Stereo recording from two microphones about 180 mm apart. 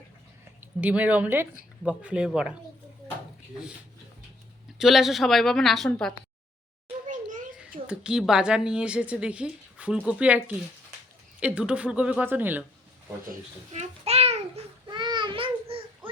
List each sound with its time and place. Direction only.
0.6 s a woman's voice: 10° right (ahead or behind)
4.8 s a woman's voice: centre (ahead or behind)
7.1 s children playing: 45° right (ahead or behind)
7.9 s a woman's voice: 5° right (ahead or behind)
13.7 s a sound: 35° right (ahead or behind)
14.8 s a sound: 25° right (ahead or behind)